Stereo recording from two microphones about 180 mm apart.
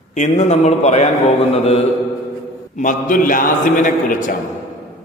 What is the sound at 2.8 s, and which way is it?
A man's voice, 50° left (ahead or behind).